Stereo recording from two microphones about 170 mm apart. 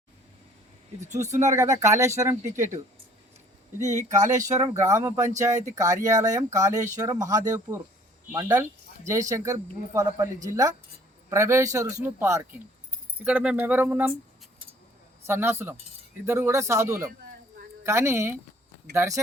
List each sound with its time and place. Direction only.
0.9 s speech: 45° right (ahead or behind)
1.5 s speech: 20° right (ahead or behind)
3.9 s speech: 45° right (ahead or behind)
4.4 s speech: 20° right (ahead or behind)
15.3 s speech: 15° right (ahead or behind)